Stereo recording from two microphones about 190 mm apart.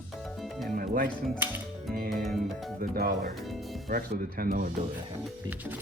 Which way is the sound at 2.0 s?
Centre (ahead or behind).